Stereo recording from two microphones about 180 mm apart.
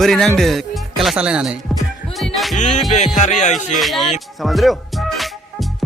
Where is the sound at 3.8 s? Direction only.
Centre (ahead or behind).